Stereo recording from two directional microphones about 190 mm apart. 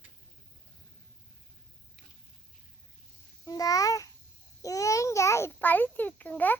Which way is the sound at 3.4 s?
20° left (ahead or behind).